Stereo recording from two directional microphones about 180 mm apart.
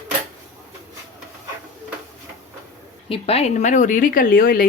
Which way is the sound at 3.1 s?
35° left (ahead or behind).